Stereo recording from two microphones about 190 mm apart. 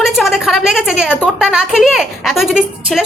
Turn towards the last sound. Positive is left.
turn(degrees=-5)  # may be behind; listen again after turning